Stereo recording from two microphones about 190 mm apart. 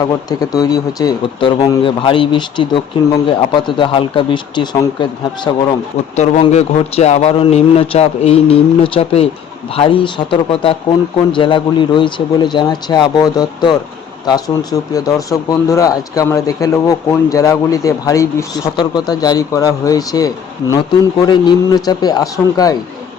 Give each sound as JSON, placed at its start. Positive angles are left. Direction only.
{"t": 0.0, "sound": "speech", "side_deg": 20}
{"t": 6.4, "sound": "a man's voice", "side_deg": 35}